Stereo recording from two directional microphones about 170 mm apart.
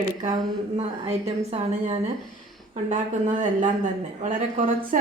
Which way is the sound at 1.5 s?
40° right (ahead or behind).